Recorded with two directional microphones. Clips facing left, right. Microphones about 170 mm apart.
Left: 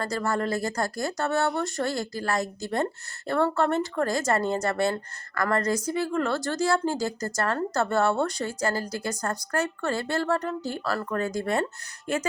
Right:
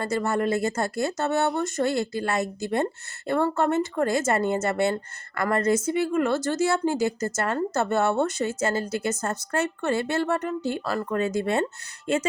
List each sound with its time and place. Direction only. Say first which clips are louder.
0.0 s speech: right 3 dB; 20° right (ahead or behind)